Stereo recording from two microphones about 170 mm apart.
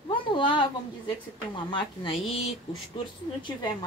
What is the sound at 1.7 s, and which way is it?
Speech, 30° left (ahead or behind).